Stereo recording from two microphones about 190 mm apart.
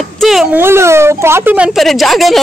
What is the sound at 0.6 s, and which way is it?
Speech, 15° right (ahead or behind).